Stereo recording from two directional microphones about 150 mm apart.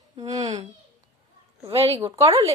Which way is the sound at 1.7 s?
40° right (ahead or behind).